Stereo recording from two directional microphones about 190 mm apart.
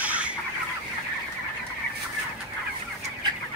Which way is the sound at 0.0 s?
10° right (ahead or behind).